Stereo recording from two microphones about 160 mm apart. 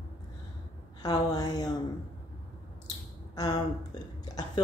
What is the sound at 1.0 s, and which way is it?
Speech, 25° left (ahead or behind).